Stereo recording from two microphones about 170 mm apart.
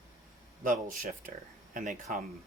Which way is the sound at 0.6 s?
50° right (ahead or behind).